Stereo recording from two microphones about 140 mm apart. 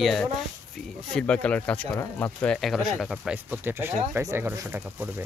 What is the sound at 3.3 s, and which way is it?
Speech, 15° right (ahead or behind).